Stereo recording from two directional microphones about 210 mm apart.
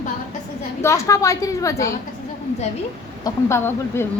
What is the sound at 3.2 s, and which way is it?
Speech, 10° left (ahead or behind).